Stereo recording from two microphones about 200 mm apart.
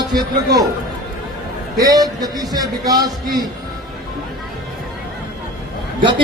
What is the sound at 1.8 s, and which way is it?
A man's voice, 20° right (ahead or behind).